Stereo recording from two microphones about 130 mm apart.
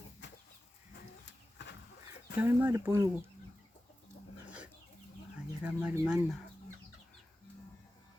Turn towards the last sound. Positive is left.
turn(degrees=-10)  # may be behind; listen again after turning